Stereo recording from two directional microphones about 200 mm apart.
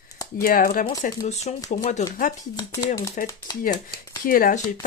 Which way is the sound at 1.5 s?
35° left (ahead or behind).